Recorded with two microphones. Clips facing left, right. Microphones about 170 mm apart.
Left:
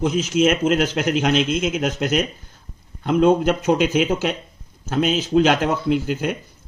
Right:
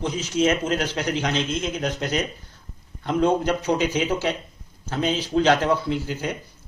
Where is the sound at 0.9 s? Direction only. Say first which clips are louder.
Left 5 dB; 50° left (ahead or behind).